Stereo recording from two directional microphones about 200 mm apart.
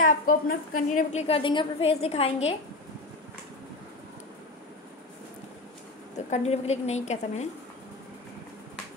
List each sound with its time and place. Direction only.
0.0 s a woman's voice: 45° left (ahead or behind)
6.3 s a woman's voice: 30° left (ahead or behind)